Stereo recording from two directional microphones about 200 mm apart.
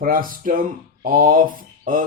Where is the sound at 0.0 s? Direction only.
45° right (ahead or behind).